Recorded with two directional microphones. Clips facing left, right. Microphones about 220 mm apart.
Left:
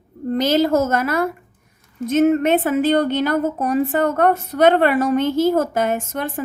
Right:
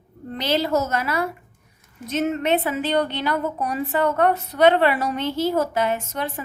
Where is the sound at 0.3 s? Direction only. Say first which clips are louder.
Left 6 dB; 45° left (ahead or behind).